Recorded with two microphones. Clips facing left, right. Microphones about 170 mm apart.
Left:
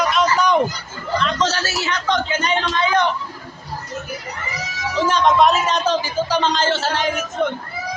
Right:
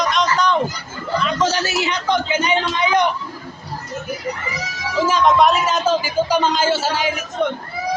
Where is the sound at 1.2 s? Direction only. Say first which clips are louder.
Right 2 dB; 5° right (ahead or behind).